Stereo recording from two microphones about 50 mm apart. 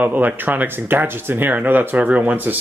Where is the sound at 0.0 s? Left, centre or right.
Right.